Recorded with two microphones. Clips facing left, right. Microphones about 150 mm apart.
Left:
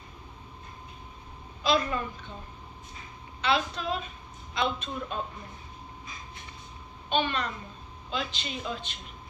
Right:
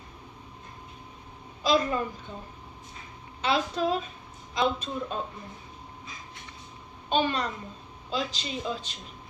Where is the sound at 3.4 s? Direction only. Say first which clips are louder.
Right 2 dB; 40° right (ahead or behind).